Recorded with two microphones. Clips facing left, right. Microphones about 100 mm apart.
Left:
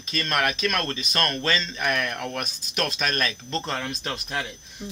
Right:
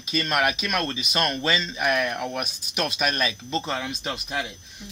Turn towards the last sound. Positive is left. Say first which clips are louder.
# right 1 dB
turn(degrees=-5)  # may be behind; listen again after turning